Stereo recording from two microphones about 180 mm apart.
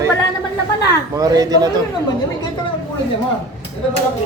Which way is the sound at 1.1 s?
20° right (ahead or behind).